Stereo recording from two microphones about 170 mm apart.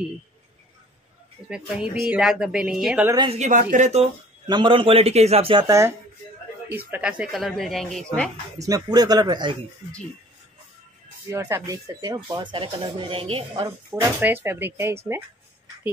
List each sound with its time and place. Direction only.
1.5 s speech: 5° right (ahead or behind)
3.3 s speech: 45° right (ahead or behind)
4.0 s speech: 25° right (ahead or behind)
6.9 s speech: 5° right (ahead or behind)
8.5 s speech: 20° right (ahead or behind)
11.2 s speech: 15° right (ahead or behind)
14.2 s speech: 15° right (ahead or behind)